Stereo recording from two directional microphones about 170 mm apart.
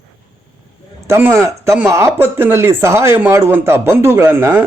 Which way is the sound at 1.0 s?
15° right (ahead or behind).